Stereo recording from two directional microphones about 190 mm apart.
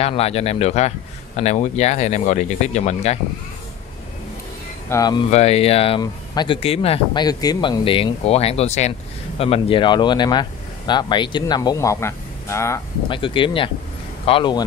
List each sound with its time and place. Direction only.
0.0 s speech: 35° left (ahead or behind)
4.8 s speech: 20° left (ahead or behind)
5.3 s speech: 35° left (ahead or behind)
7.2 s speech: 20° left (ahead or behind)
13.1 s speech: 25° left (ahead or behind)